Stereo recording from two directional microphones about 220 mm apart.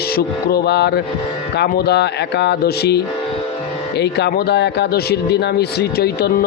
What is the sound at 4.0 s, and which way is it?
A man's voice, 50° left (ahead or behind).